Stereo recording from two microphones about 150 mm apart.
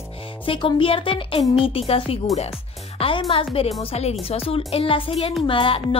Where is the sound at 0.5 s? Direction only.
35° left (ahead or behind).